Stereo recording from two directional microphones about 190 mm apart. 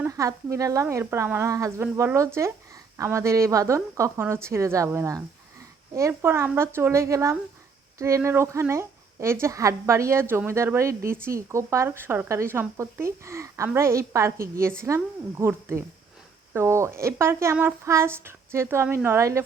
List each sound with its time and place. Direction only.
0.0 s speech: 15° right (ahead or behind)